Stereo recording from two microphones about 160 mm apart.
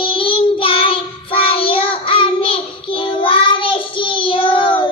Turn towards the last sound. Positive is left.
turn(degrees=30)  # may be behind; listen again after turning